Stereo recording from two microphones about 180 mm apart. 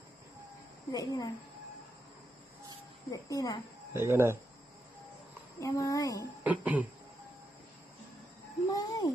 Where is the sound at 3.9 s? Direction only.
15° right (ahead or behind).